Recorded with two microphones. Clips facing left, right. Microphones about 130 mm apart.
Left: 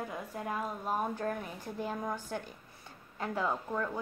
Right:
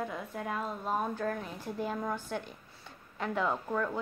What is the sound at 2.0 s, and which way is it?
A woman's voice, 15° left (ahead or behind).